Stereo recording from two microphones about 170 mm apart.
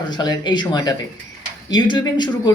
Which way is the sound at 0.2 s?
25° left (ahead or behind).